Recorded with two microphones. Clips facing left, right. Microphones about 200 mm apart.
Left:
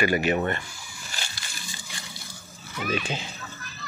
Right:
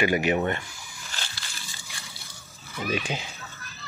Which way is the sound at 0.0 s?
15° right (ahead or behind).